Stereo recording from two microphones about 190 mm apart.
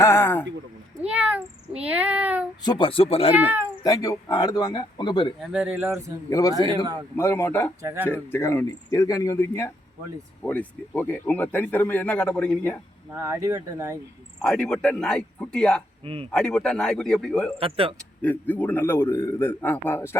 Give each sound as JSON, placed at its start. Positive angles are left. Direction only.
{"t": 0.0, "sound": "a sound", "side_deg": 10}
{"t": 1.0, "sound": "speech", "side_deg": -5}
{"t": 2.6, "sound": "speech", "side_deg": 25}
{"t": 3.3, "sound": "speech", "side_deg": -10}
{"t": 3.8, "sound": "speech", "side_deg": 15}
{"t": 5.4, "sound": "speech", "side_deg": -5}
{"t": 6.3, "sound": "speech", "side_deg": 20}
{"t": 7.8, "sound": "speech", "side_deg": -15}
{"t": 8.0, "sound": "speech", "side_deg": 10}
{"t": 13.1, "sound": "speech", "side_deg": -15}
{"t": 14.4, "sound": "speech", "side_deg": 5}
{"t": 17.6, "sound": "speech", "side_deg": -30}
{"t": 17.9, "sound": "speech", "side_deg": 10}